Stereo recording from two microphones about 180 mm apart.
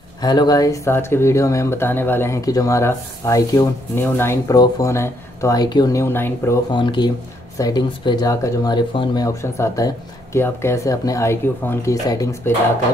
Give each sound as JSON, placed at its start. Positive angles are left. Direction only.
{"t": 0.2, "sound": "speech", "side_deg": 20}
{"t": 6.7, "sound": "speech", "side_deg": 25}